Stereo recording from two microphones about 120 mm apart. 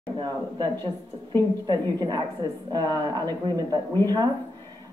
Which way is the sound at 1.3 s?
35° right (ahead or behind).